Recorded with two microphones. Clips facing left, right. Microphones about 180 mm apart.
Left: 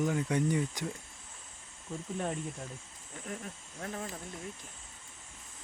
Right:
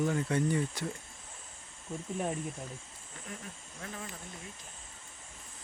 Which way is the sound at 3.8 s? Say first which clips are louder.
Left 4 dB; 40° left (ahead or behind).